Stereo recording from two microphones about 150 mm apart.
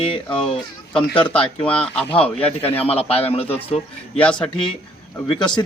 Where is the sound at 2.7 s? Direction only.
40° left (ahead or behind).